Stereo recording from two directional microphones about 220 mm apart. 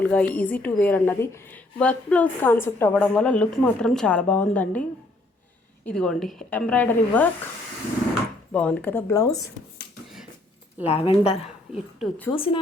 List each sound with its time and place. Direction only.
0.0 s a woman's voice: 5° left (ahead or behind)
8.5 s a woman's voice: 5° left (ahead or behind)
10.8 s a woman's voice: 25° left (ahead or behind)
11.7 s a woman's voice: 5° left (ahead or behind)